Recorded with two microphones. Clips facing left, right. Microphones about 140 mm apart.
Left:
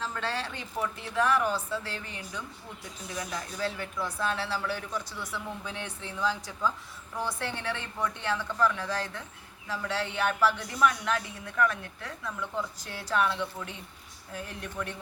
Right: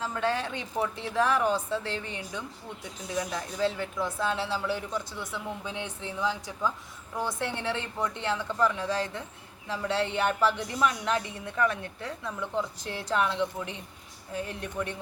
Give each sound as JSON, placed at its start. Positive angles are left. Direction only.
{"t": 0.0, "sound": "speech", "side_deg": -15}
{"t": 0.8, "sound": "a woman's voice", "side_deg": -30}